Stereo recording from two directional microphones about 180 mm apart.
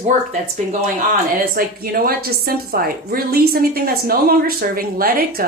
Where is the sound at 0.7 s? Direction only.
50° right (ahead or behind).